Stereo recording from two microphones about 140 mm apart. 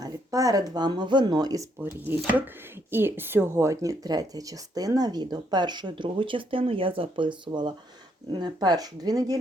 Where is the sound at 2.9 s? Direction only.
15° right (ahead or behind).